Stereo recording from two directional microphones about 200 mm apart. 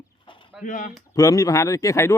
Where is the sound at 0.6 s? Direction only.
40° left (ahead or behind).